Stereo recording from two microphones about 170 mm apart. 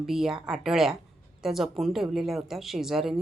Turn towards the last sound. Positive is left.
turn(degrees=0)  # may be behind; listen again after turning